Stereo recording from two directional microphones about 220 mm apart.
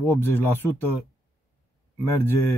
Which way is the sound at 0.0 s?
10° left (ahead or behind).